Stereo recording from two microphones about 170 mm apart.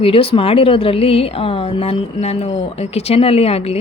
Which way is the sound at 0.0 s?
35° left (ahead or behind).